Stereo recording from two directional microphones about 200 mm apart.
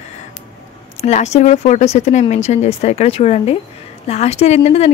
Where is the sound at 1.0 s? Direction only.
35° left (ahead or behind).